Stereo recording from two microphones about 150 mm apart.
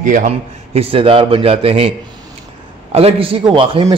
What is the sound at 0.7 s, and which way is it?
A man's voice, 40° right (ahead or behind).